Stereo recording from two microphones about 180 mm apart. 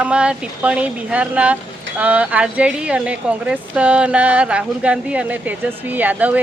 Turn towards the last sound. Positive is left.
turn(degrees=-10)  # may be behind; listen again after turning